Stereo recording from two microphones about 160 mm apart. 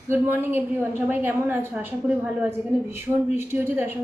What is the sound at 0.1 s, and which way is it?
A woman's voice, 15° right (ahead or behind).